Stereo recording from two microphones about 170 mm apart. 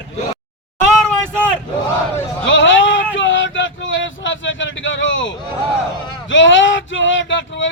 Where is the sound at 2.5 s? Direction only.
90° left.